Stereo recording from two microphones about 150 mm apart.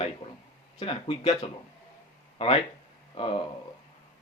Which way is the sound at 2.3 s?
40° left (ahead or behind).